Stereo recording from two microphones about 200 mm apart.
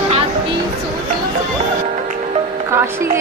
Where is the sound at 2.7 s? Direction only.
10° right (ahead or behind).